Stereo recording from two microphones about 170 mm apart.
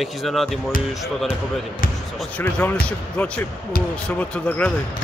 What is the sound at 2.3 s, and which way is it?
Speech, 10° left (ahead or behind).